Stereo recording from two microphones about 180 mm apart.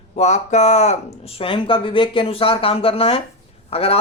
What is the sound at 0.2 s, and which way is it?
Speech, 40° left (ahead or behind).